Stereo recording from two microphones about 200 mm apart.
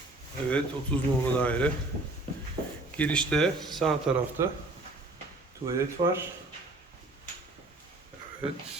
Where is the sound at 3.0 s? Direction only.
5° left (ahead or behind).